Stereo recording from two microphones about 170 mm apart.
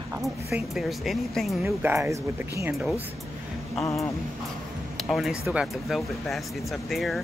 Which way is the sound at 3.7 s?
20° left (ahead or behind).